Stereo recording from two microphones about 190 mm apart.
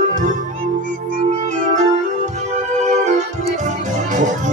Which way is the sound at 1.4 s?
40° right (ahead or behind).